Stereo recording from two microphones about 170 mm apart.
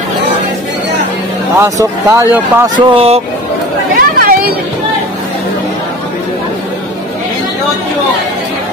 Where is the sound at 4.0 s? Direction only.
60° right (ahead or behind).